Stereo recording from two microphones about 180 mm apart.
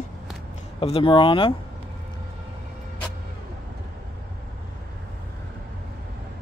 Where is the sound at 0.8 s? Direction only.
30° left (ahead or behind).